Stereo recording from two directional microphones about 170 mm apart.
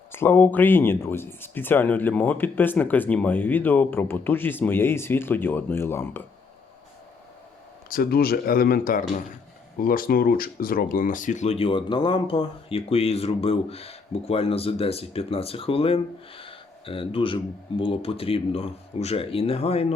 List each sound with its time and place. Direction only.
0.1 s speech: 15° left (ahead or behind)
7.9 s speech: 60° left (ahead or behind); by 19.9 s 35° left (ahead or behind)